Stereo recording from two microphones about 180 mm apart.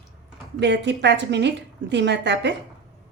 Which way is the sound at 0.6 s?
70° right (ahead or behind).